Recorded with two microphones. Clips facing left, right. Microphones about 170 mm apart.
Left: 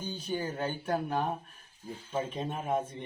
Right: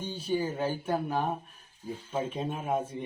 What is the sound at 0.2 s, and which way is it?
Speech, 10° right (ahead or behind).